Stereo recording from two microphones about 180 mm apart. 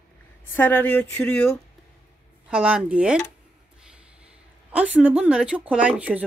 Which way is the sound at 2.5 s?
5° right (ahead or behind).